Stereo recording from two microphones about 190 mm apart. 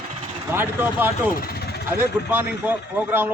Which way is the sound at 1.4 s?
55° left (ahead or behind).